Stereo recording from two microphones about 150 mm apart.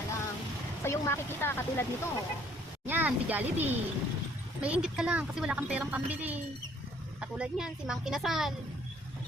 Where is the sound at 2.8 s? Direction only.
10° right (ahead or behind).